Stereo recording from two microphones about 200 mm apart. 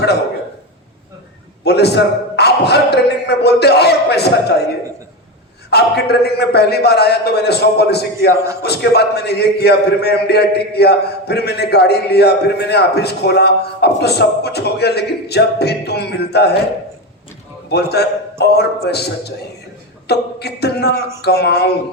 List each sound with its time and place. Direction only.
1.6 s a man's voice: 55° left (ahead or behind)
5.7 s a man's voice: 55° left (ahead or behind)
17.7 s a man's voice: 55° left (ahead or behind)